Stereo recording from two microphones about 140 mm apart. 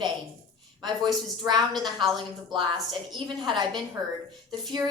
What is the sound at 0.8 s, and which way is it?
Speech, 30° right (ahead or behind).